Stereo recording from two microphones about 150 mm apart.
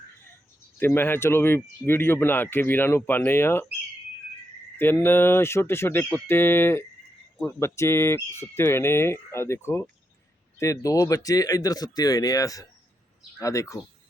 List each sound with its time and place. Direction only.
0.8 s speech: 15° left (ahead or behind)
4.8 s speech: 15° left (ahead or behind)